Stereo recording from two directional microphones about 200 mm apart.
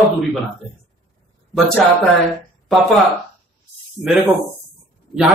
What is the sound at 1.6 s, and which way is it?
A man's voice, 5° left (ahead or behind).